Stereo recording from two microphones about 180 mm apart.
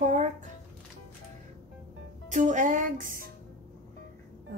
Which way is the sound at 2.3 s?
45° right (ahead or behind).